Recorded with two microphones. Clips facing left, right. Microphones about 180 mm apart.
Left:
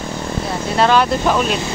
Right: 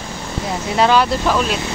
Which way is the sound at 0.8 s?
10° right (ahead or behind).